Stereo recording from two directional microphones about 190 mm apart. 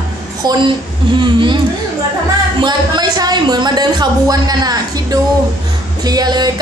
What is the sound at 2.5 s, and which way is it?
Speech, 25° right (ahead or behind).